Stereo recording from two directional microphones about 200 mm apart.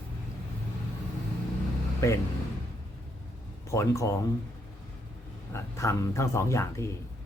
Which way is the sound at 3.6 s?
15° left (ahead or behind).